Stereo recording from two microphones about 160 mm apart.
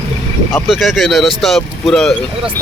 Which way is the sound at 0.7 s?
Centre (ahead or behind).